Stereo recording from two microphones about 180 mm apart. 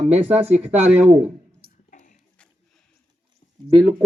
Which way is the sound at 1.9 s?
45° left (ahead or behind).